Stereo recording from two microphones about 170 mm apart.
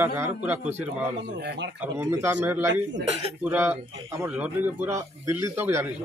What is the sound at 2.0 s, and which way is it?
Speech, 15° right (ahead or behind).